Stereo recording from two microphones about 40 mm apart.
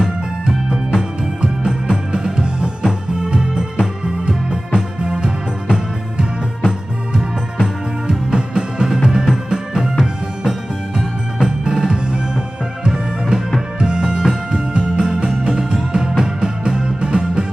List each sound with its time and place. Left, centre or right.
0.7 s music: right
8.9 s music: centre
9.8 s music: centre
11.3 s music: centre